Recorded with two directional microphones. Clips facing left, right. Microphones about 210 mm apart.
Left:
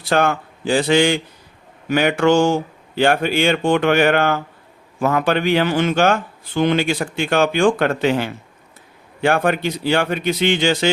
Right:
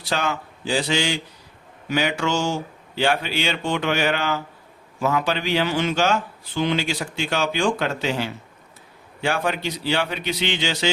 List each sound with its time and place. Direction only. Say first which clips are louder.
0.0 s a man's voice: left 7 dB; 55° left (ahead or behind)